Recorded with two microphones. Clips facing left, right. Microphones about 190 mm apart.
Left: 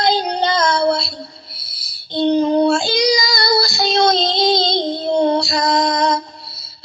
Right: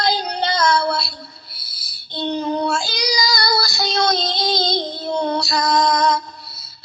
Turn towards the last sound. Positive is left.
turn(degrees=25)  # may be behind; listen again after turning